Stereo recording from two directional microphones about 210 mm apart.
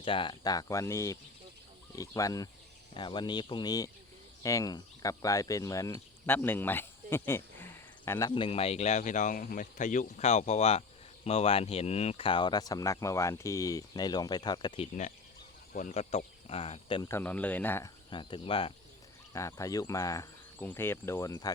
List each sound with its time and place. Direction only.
0.0 s speech: 25° left (ahead or behind)
8.4 s speech: 30° left (ahead or behind)
15.7 s speech: 35° left (ahead or behind)
17.1 s speech: 10° left (ahead or behind); by 18.7 s 25° left (ahead or behind)
19.3 s speech: 15° left (ahead or behind)